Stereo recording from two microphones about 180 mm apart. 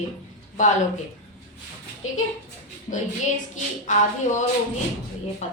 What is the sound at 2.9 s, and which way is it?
A woman's voice, 45° left (ahead or behind).